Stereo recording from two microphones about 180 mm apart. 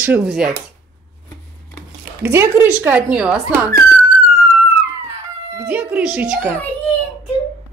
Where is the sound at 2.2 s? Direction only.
15° right (ahead or behind).